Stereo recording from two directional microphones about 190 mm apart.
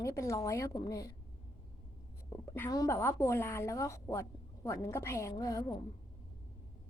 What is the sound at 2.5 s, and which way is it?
A woman's voice, 15° left (ahead or behind).